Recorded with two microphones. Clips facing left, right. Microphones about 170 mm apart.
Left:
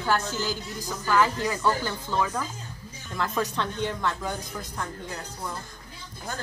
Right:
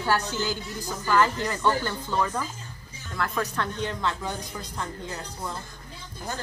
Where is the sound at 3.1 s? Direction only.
20° left (ahead or behind).